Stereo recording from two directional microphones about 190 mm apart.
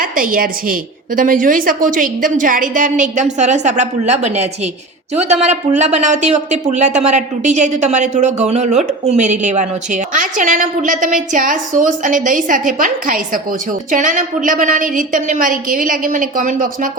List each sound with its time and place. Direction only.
0.0 s a woman's voice: 50° right (ahead or behind)